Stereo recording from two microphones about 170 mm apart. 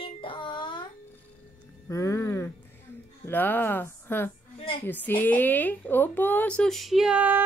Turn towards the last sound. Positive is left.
turn(degrees=-10)  # may be behind; listen again after turning